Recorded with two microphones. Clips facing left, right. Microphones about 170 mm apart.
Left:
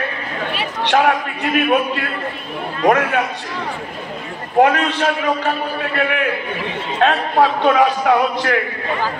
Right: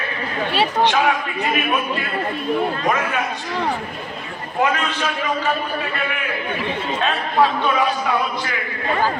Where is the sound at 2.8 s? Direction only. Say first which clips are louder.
Left 6 dB; 65° left (ahead or behind).